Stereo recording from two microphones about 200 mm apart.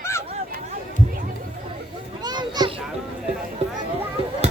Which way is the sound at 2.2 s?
20° right (ahead or behind).